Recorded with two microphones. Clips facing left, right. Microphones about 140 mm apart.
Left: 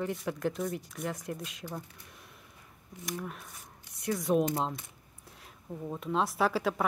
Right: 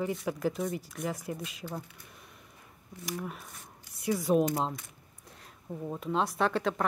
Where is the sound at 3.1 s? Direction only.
Centre (ahead or behind).